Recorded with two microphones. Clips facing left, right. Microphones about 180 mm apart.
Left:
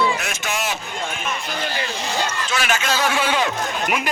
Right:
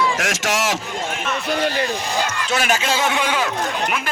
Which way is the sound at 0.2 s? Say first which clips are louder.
Right 5 dB; 90° right.